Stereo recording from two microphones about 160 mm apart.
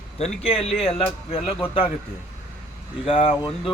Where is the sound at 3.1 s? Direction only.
35° left (ahead or behind).